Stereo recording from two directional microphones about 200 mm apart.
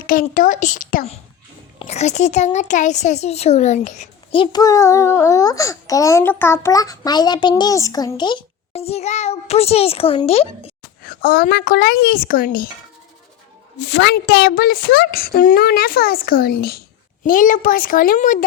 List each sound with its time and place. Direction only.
0.1 s a woman's voice: 45° left (ahead or behind)
11.0 s a woman's voice: 50° left (ahead or behind)
13.7 s a woman's voice: 60° left (ahead or behind); by 18.4 s 40° left (ahead or behind)